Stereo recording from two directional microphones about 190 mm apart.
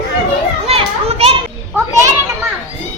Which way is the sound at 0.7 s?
30° right (ahead or behind).